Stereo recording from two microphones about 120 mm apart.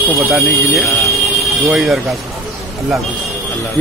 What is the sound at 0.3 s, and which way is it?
Speech, centre (ahead or behind).